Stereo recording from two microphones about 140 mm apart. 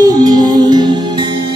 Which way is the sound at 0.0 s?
25° right (ahead or behind).